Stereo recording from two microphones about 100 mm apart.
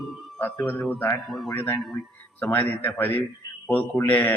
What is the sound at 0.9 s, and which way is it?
Speech, 20° left (ahead or behind).